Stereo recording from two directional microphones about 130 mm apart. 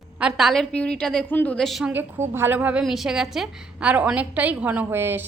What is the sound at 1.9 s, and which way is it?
Speech, 15° right (ahead or behind).